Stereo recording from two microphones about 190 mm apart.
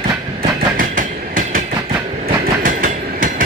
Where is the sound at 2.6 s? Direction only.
45° right (ahead or behind).